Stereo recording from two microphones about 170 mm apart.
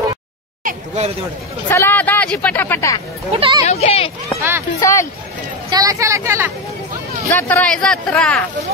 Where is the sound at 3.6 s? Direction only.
40° left (ahead or behind).